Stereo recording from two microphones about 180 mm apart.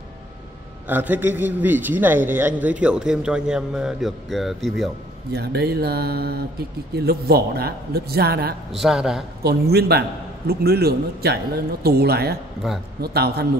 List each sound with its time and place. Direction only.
0.8 s a man's voice: 10° right (ahead or behind)
5.3 s a man's voice: 65° right (ahead or behind)
8.7 s a man's voice: centre (ahead or behind)
9.4 s a man's voice: 60° right (ahead or behind)
12.6 s a man's voice: centre (ahead or behind)
13.0 s a man's voice: 60° right (ahead or behind)